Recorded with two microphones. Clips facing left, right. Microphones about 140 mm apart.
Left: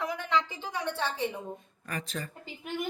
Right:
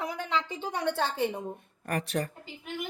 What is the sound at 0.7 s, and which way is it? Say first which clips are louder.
A woman's voice: right 3 dB; 55° right (ahead or behind).